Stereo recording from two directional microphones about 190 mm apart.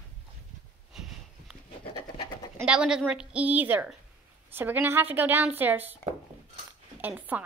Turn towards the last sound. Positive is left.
turn(degrees=-10)  # may be behind; listen again after turning